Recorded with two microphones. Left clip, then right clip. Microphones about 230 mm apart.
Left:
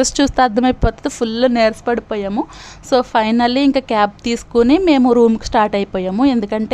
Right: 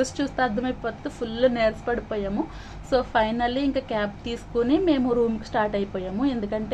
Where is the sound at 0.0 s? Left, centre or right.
Left.